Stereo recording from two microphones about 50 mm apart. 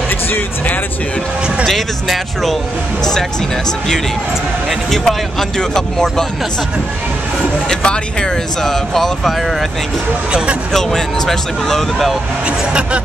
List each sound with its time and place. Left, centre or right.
1.7 s speech: centre
4.6 s speech: centre
7.8 s speech: centre
8.6 s speech: centre
10.7 s speech: centre
12.4 s speech: right